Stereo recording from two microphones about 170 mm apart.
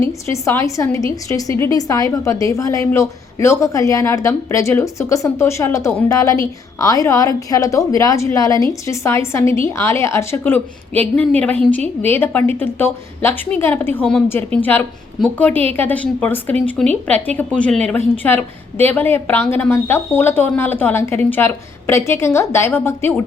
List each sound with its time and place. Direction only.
0.0 s a woman's voice: 15° left (ahead or behind)